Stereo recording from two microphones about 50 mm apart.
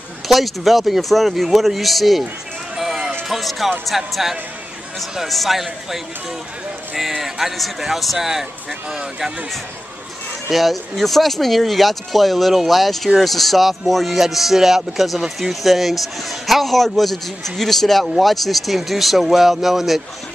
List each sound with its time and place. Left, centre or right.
0.3 s a man's voice: centre
2.7 s music: centre
3.3 s a man's voice: centre
7.0 s a man's voice: centre
10.5 s a man's voice: centre